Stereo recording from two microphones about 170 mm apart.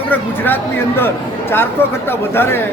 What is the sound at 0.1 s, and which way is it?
Speech, 10° left (ahead or behind).